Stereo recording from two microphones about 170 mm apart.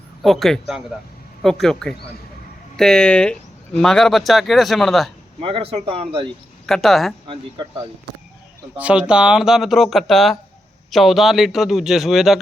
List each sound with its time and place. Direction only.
0.2 s speech: centre (ahead or behind)
5.4 s speech: 30° right (ahead or behind)
6.7 s speech: centre (ahead or behind)
7.3 s speech: 25° right (ahead or behind)
8.7 s speech: 5° right (ahead or behind)